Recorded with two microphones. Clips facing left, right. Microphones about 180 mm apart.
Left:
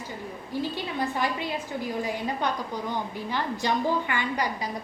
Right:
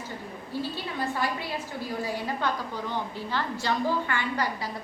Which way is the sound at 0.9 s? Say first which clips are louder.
Left 1 dB; 20° left (ahead or behind).